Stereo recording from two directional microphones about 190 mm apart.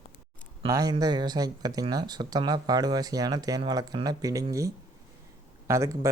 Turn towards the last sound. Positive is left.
turn(degrees=-15)  # may be behind; listen again after turning